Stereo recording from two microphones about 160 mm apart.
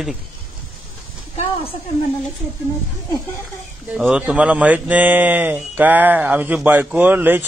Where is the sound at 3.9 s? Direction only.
10° right (ahead or behind).